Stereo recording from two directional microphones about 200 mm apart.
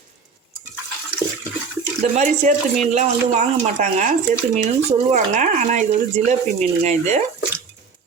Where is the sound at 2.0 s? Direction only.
35° right (ahead or behind).